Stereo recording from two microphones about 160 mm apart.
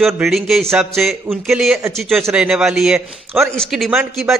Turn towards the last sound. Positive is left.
turn(degrees=-5)  # may be behind; listen again after turning